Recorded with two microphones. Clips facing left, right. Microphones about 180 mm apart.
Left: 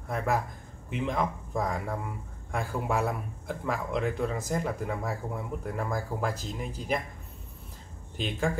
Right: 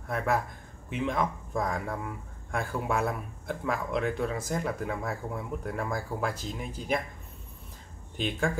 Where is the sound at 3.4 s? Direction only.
Centre (ahead or behind).